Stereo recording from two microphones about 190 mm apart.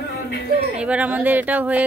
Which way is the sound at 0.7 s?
5° right (ahead or behind).